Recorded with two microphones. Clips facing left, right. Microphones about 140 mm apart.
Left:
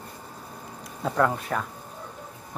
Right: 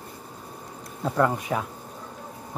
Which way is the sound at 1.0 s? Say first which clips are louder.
Right 1 dB; 5° right (ahead or behind).